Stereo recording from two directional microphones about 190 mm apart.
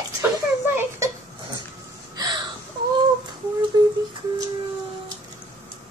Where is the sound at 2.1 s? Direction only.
20° right (ahead or behind).